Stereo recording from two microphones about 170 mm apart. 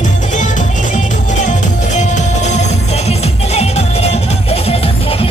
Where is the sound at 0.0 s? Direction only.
45° left (ahead or behind).